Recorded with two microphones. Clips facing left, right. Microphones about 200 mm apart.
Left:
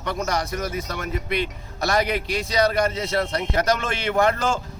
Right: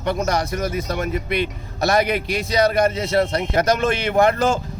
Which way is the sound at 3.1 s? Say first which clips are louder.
Right 5 dB; 25° right (ahead or behind).